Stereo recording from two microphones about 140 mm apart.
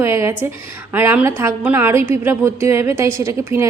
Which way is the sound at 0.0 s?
20° right (ahead or behind).